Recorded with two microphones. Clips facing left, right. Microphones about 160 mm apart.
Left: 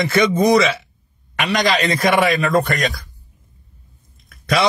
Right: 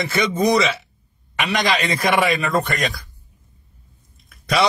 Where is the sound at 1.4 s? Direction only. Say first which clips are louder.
Left 2 dB; 45° left (ahead or behind).